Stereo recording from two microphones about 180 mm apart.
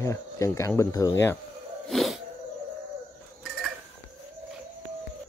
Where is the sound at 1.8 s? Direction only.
Centre (ahead or behind).